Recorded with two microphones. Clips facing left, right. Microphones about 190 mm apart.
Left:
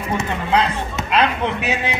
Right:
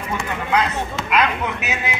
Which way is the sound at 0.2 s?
30° left (ahead or behind).